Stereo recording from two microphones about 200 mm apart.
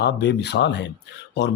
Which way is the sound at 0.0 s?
55° left (ahead or behind).